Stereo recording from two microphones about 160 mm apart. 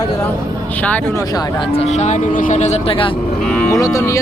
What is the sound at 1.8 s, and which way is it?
Speech, 45° left (ahead or behind).